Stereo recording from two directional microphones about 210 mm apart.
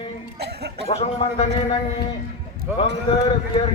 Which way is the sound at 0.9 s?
30° left (ahead or behind).